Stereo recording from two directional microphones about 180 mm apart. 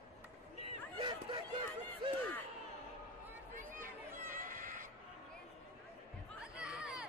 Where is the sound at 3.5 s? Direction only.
50° right (ahead or behind).